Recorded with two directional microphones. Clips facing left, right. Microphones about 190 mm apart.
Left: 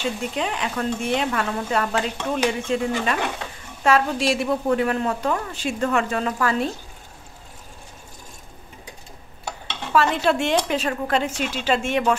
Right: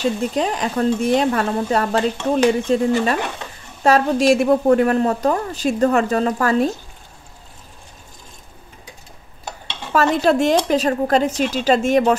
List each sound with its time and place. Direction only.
0.0 s a woman's voice: 40° right (ahead or behind)
9.9 s a woman's voice: 40° right (ahead or behind)